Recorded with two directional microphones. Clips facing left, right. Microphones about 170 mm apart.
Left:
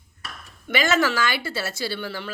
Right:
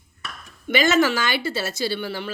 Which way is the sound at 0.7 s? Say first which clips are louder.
Right 3 dB; 20° right (ahead or behind).